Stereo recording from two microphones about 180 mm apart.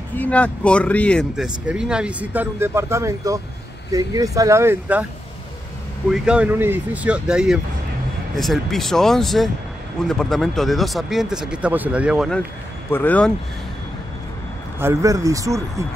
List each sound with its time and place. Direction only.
0.1 s speech: 10° left (ahead or behind); by 5.0 s 10° right (ahead or behind)
6.1 s speech: 5° right (ahead or behind)
12.9 s speech: 10° left (ahead or behind)
14.8 s speech: 15° right (ahead or behind)